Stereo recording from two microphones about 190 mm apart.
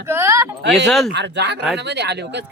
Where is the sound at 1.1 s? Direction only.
65° right (ahead or behind).